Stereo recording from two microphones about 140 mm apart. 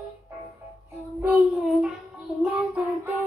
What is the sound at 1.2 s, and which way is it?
Child singing, 10° right (ahead or behind).